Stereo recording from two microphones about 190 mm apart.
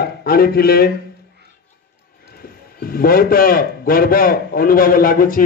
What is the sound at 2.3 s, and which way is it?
A man's voice, 50° left (ahead or behind).